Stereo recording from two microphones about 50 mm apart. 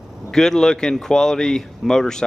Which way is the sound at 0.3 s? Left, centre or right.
Centre.